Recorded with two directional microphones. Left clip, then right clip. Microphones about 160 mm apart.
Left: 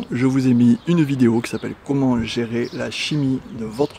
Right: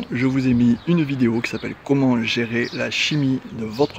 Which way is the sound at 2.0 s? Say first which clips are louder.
Left 1 dB; 5° left (ahead or behind).